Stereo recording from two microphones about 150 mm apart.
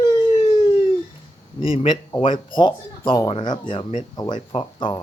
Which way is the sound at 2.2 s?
30° left (ahead or behind).